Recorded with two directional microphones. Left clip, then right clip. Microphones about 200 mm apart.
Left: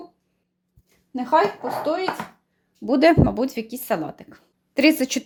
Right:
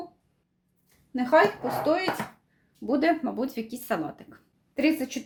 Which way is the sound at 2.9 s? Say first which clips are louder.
Left 8 dB; 45° left (ahead or behind).